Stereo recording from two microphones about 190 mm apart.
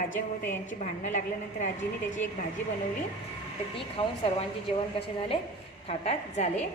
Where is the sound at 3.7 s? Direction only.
30° left (ahead or behind).